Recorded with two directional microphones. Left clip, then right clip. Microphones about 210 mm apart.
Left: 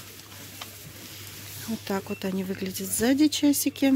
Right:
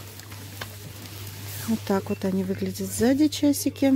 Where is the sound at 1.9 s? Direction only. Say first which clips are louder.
Right 4 dB; 10° right (ahead or behind).